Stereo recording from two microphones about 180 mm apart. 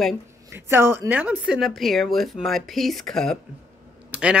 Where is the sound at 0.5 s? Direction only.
15° right (ahead or behind).